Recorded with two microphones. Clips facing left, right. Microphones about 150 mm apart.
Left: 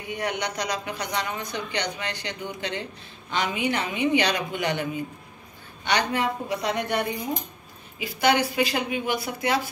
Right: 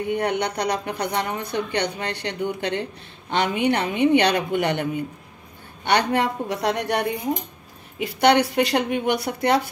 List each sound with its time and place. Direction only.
0.0 s a woman's voice: 55° right (ahead or behind); by 7.0 s 75° right (ahead or behind)
8.0 s a woman's voice: 65° right (ahead or behind)